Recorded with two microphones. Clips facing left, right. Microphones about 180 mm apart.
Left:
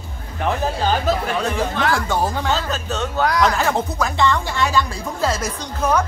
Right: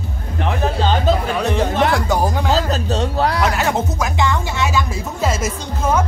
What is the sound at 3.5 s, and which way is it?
A woman's voice, 10° right (ahead or behind).